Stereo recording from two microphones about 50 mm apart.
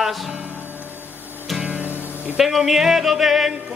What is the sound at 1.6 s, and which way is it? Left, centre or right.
Music, right.